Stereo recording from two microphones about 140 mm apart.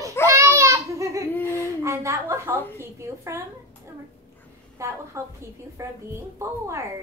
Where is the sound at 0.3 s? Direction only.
20° right (ahead or behind).